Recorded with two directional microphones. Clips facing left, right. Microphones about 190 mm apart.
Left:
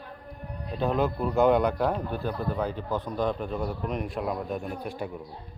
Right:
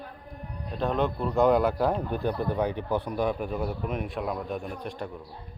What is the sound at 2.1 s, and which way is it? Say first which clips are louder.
Speech: right 2 dB; 15° right (ahead or behind).